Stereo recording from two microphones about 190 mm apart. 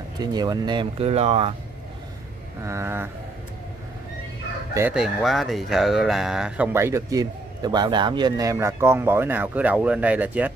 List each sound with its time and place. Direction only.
0.2 s speech: 20° right (ahead or behind)
2.6 s speech: 15° right (ahead or behind)
4.7 s speech: 5° right (ahead or behind)